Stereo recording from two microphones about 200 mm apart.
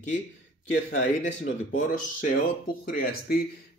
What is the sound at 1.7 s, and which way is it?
Speech, 45° left (ahead or behind).